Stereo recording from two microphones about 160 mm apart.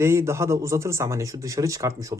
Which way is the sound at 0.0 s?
15° right (ahead or behind).